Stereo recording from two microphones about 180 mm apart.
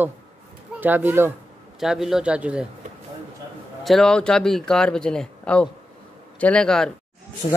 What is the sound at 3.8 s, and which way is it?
A man's voice, centre (ahead or behind).